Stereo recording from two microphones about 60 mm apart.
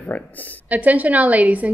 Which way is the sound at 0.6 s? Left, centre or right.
Right.